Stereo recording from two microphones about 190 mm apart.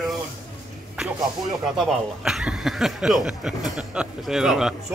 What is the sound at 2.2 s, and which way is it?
A man's voice, centre (ahead or behind).